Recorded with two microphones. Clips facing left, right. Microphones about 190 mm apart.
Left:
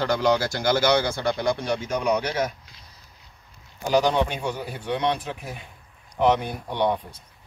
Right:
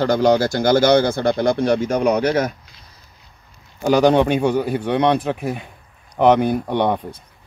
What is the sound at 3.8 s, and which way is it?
A man's voice, 60° right (ahead or behind).